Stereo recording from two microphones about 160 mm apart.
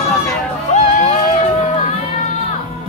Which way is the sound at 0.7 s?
50° left (ahead or behind).